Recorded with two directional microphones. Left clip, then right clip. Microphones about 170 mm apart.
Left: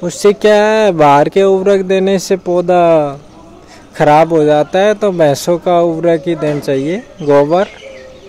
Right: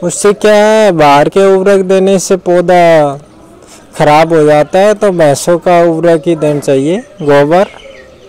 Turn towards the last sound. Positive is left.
turn(degrees=-20)  # may be behind; listen again after turning